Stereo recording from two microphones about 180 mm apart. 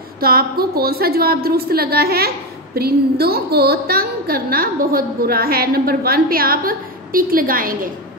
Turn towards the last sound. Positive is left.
turn(degrees=-50)  # may be behind; listen again after turning